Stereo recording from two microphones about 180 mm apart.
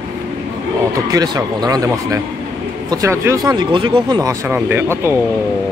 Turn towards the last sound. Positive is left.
turn(degrees=-10)  # may be behind; listen again after turning